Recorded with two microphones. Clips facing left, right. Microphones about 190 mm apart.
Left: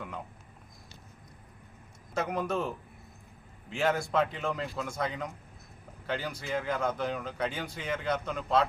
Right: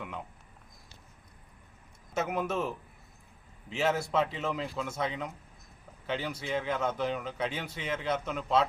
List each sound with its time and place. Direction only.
2.1 s speech: 5° right (ahead or behind)